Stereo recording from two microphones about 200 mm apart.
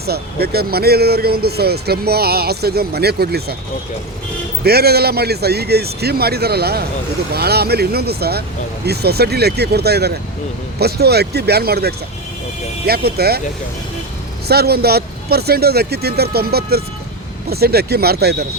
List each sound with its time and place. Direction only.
0.0 s speech: 50° right (ahead or behind)
4.6 s speech: 50° right (ahead or behind)
13.1 s speech: 50° right (ahead or behind)
14.4 s speech: 50° right (ahead or behind)